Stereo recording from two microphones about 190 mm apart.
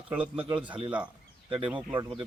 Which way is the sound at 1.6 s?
25° right (ahead or behind).